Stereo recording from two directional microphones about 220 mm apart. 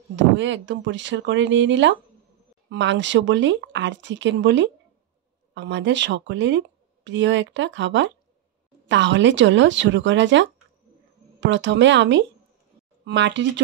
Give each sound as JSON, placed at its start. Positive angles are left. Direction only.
{"t": 0.1, "sound": "speech", "side_deg": -55}